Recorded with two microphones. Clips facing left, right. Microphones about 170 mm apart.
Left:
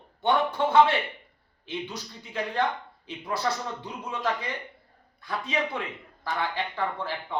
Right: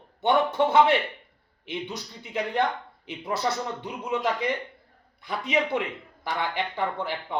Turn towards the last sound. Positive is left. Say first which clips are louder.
# right 2 dB
turn(degrees=-20)  # may be behind; listen again after turning